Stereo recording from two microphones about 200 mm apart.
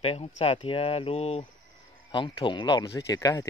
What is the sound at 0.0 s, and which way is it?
Speech, 30° left (ahead or behind).